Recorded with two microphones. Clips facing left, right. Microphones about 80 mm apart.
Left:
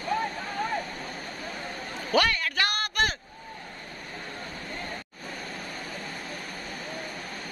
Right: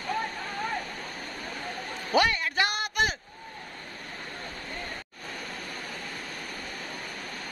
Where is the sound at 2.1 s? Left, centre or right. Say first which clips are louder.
Even; centre.